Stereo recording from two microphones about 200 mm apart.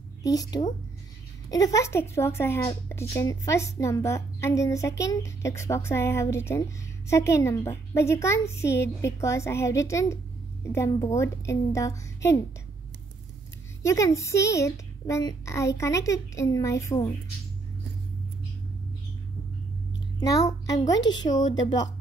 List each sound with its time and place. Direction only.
0.2 s a woman's voice: 20° left (ahead or behind)
13.8 s a woman's voice: 15° left (ahead or behind)
20.2 s a child's voice: 15° left (ahead or behind)